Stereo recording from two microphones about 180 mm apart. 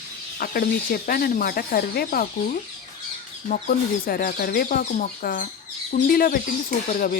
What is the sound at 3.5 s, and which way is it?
Speech, 55° left (ahead or behind).